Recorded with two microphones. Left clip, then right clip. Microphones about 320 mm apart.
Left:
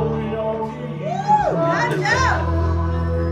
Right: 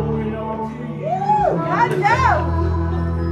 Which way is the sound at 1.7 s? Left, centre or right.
Centre.